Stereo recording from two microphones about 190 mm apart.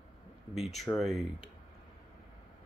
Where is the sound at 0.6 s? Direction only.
Centre (ahead or behind).